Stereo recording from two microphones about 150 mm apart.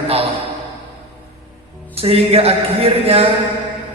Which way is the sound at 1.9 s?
40° right (ahead or behind).